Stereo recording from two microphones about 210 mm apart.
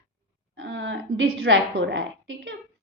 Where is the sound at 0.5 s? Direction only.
65° right (ahead or behind).